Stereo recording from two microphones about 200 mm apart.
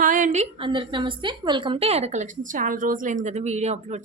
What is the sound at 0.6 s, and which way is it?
A woman's voice, 25° right (ahead or behind).